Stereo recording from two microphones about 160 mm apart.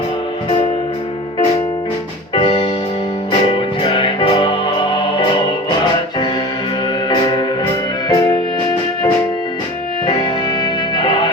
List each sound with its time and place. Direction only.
2.3 s music: 30° left (ahead or behind)
3.8 s music: 35° left (ahead or behind)
7.1 s music: 30° left (ahead or behind)
10.1 s music: 25° left (ahead or behind)